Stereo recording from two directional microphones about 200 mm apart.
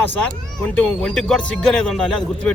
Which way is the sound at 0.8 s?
5° left (ahead or behind).